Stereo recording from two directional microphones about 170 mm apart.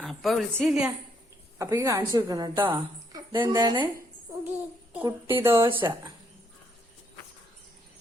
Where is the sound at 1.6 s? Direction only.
20° right (ahead or behind).